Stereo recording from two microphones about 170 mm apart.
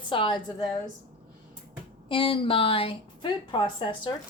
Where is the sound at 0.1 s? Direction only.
30° left (ahead or behind).